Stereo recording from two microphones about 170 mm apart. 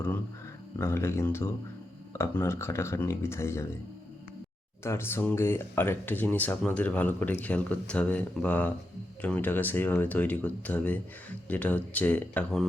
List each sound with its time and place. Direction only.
0.8 s speech: 15° left (ahead or behind)
4.8 s speech: 15° left (ahead or behind)